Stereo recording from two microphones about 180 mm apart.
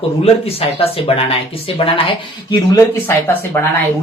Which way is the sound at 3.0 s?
10° left (ahead or behind).